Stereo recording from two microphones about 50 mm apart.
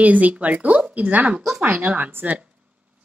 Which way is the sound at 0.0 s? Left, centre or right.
Right.